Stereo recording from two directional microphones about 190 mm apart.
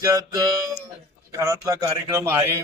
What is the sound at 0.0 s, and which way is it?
A man's voice, 20° right (ahead or behind).